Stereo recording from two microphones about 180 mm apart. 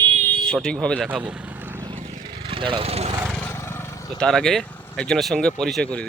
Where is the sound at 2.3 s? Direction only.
30° right (ahead or behind).